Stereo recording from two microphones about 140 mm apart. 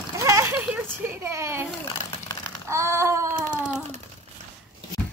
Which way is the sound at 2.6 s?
20° right (ahead or behind).